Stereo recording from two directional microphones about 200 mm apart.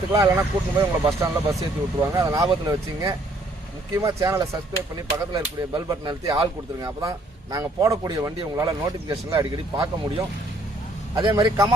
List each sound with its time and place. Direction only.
0.1 s speech: 15° right (ahead or behind)